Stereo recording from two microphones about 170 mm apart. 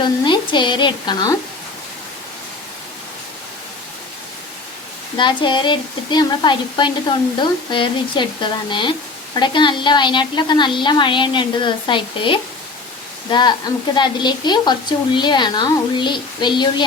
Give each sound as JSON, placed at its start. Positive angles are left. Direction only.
{"t": 0.0, "sound": "speech", "side_deg": 25}
{"t": 5.1, "sound": "speech", "side_deg": 25}
{"t": 13.9, "sound": "speech", "side_deg": 25}